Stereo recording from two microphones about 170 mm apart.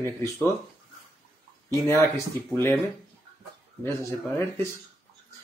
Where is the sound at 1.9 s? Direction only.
15° left (ahead or behind).